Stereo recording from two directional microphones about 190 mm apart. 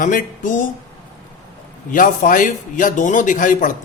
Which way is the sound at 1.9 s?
45° left (ahead or behind).